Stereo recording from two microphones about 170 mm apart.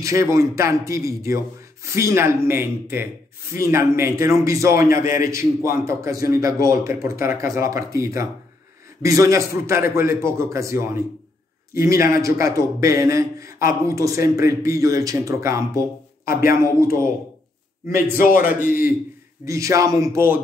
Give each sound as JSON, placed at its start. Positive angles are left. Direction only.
{"t": 0.0, "sound": "a man's voice", "side_deg": -20}
{"t": 16.4, "sound": "a man's voice", "side_deg": 60}
{"t": 18.1, "sound": "a man's voice", "side_deg": 55}
{"t": 18.4, "sound": "a man's voice", "side_deg": -10}